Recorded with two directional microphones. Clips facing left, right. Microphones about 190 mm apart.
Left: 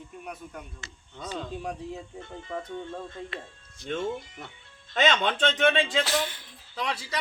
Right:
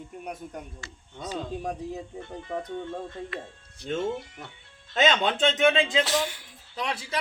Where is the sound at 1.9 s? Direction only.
20° right (ahead or behind).